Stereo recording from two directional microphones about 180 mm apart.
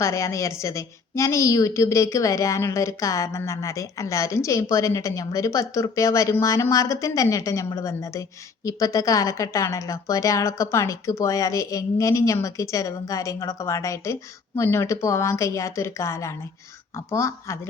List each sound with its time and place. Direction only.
0.0 s a woman's voice: 15° left (ahead or behind)